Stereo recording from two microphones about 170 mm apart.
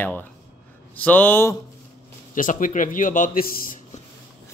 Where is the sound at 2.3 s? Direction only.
50° left (ahead or behind).